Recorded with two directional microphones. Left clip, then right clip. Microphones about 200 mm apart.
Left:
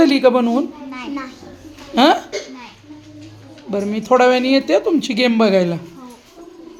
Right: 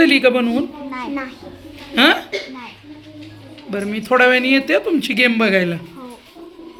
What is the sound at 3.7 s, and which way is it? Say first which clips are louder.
Speech: left 2 dB; 5° left (ahead or behind).